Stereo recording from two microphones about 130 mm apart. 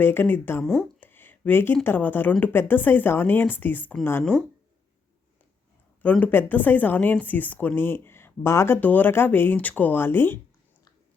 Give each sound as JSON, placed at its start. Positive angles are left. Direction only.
{"t": 0.0, "sound": "speech", "side_deg": 15}
{"t": 0.6, "sound": "speech", "side_deg": 5}
{"t": 1.0, "sound": "speech", "side_deg": 15}
{"t": 4.2, "sound": "speech", "side_deg": 5}
{"t": 6.0, "sound": "speech", "side_deg": 10}